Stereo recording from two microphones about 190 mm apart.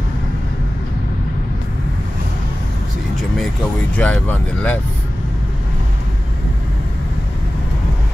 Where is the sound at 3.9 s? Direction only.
5° left (ahead or behind).